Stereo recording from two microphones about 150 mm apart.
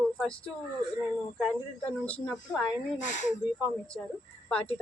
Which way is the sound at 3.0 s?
55° left (ahead or behind).